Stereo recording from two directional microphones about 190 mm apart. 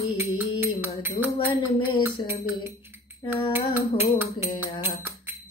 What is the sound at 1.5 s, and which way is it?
Speech, 25° left (ahead or behind).